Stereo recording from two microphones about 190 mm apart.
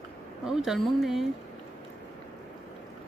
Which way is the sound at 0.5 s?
Centre (ahead or behind).